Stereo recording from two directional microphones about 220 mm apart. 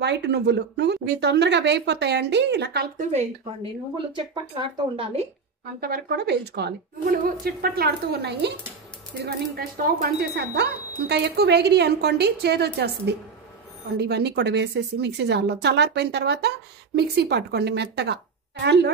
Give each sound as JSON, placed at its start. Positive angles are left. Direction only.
{"t": 0.0, "sound": "a woman's voice", "side_deg": -50}
{"t": 4.1, "sound": "speech", "side_deg": -20}
{"t": 5.8, "sound": "a woman's voice", "side_deg": -45}